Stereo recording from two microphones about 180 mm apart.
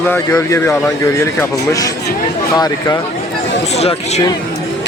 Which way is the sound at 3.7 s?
35° left (ahead or behind).